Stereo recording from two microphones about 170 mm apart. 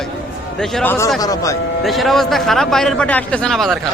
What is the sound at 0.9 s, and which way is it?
Speech, 15° left (ahead or behind).